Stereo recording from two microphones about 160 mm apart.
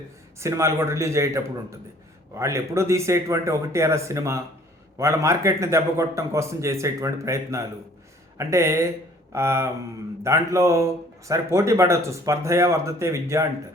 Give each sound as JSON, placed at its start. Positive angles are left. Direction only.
{"t": 0.3, "sound": "a man's voice", "side_deg": -20}